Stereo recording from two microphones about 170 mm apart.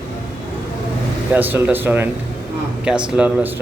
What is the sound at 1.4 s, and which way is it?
Speech, 10° right (ahead or behind).